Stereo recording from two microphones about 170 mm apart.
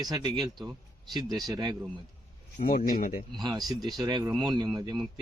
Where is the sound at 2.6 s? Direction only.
55° left (ahead or behind).